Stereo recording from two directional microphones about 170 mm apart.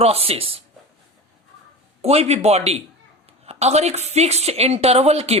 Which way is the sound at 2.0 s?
40° right (ahead or behind).